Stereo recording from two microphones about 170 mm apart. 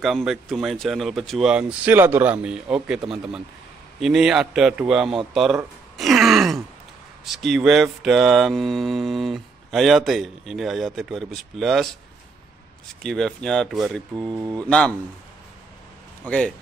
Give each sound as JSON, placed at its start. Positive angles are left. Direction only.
{"t": 0.0, "sound": "mantra", "side_deg": 0}
{"t": 4.0, "sound": "mantra", "side_deg": -5}
{"t": 13.0, "sound": "mantra", "side_deg": 0}
{"t": 14.3, "sound": "speech", "side_deg": -20}
{"t": 16.3, "sound": "mantra", "side_deg": 5}